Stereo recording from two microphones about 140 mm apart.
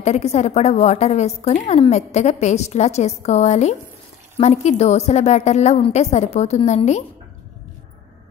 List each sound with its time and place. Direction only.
0.0 s a woman's voice: 50° left (ahead or behind)